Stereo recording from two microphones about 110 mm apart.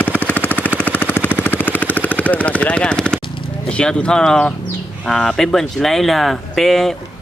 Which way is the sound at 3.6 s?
10° left (ahead or behind).